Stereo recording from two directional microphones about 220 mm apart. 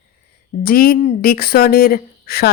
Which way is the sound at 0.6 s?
40° left (ahead or behind).